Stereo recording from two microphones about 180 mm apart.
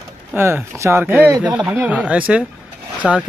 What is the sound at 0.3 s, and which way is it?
Speech, 10° right (ahead or behind).